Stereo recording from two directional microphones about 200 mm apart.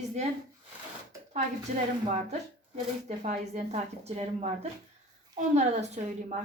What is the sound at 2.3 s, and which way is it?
Speech, 35° right (ahead or behind).